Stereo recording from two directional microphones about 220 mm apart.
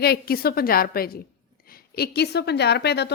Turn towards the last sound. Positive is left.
turn(degrees=50)  # may be behind; listen again after turning